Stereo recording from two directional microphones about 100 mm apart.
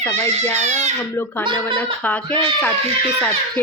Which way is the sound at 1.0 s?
20° left (ahead or behind).